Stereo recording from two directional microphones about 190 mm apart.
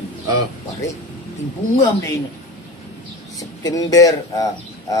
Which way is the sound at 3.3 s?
20° left (ahead or behind).